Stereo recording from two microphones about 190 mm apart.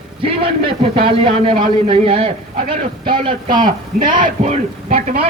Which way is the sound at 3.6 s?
45° right (ahead or behind).